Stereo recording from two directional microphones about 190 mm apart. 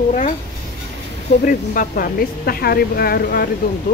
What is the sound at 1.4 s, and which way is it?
Speech, 45° left (ahead or behind).